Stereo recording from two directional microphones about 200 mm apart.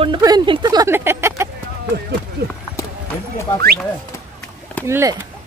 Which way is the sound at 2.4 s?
50° right (ahead or behind).